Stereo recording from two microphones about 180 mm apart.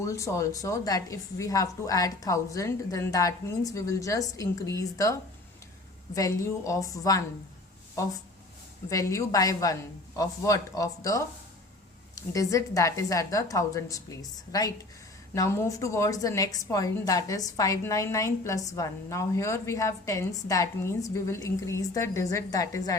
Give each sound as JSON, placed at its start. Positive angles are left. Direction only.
{"t": 0.0, "sound": "a woman's voice", "side_deg": 15}
{"t": 6.1, "sound": "a woman's voice", "side_deg": 20}
{"t": 8.9, "sound": "a woman's voice", "side_deg": 20}